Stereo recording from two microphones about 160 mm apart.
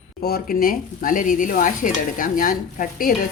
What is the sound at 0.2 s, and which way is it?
Speech, 70° left (ahead or behind).